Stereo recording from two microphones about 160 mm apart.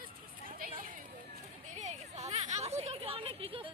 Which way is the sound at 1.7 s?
45° right (ahead or behind).